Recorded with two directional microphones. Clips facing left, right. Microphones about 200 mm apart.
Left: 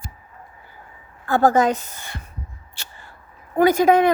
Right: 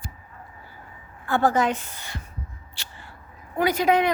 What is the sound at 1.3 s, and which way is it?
Speech, 40° left (ahead or behind).